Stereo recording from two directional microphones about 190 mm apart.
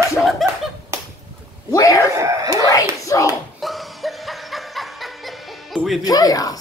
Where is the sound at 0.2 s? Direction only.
Centre (ahead or behind).